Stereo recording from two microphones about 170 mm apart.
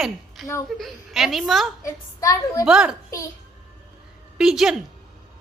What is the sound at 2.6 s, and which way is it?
Speech, 5° right (ahead or behind).